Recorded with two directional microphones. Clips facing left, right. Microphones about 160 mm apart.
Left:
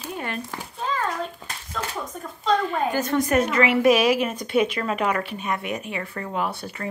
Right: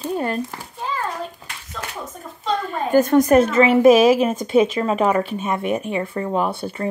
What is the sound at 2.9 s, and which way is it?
A woman's voice, 50° right (ahead or behind).